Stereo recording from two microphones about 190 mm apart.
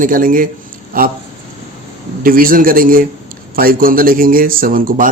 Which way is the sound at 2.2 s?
50° right (ahead or behind).